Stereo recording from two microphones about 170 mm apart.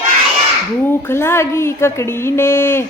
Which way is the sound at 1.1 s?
15° left (ahead or behind).